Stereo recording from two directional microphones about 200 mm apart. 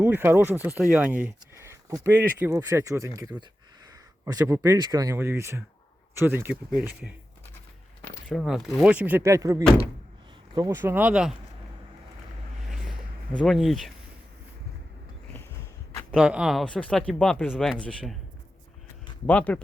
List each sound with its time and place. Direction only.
0.0 s speech: 10° right (ahead or behind)
8.3 s speech: centre (ahead or behind)
13.4 s speech: centre (ahead or behind)
16.1 s speech: 5° right (ahead or behind)
19.2 s speech: 5° left (ahead or behind)